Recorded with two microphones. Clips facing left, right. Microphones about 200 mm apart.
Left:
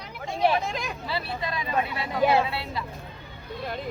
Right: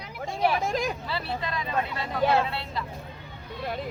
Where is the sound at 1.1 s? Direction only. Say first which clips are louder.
Left 1 dB; 10° left (ahead or behind).